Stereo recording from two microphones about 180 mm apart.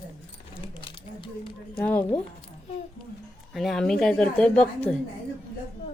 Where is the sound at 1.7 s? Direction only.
10° left (ahead or behind).